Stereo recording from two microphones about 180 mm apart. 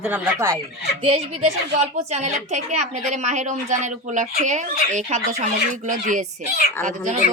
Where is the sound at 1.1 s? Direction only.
35° right (ahead or behind).